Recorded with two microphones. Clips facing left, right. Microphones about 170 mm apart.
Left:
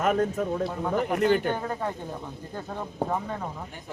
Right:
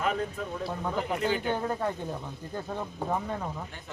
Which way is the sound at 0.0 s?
45° left (ahead or behind).